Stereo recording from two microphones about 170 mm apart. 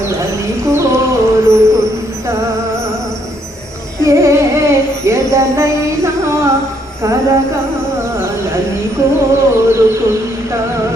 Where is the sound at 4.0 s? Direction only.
15° right (ahead or behind).